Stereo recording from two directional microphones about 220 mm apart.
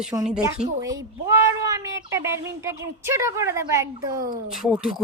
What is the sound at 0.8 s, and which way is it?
A child's voice, 15° right (ahead or behind).